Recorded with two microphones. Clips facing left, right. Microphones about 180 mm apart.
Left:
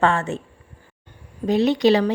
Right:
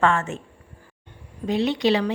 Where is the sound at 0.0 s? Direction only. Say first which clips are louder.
Left 1 dB; 35° left (ahead or behind).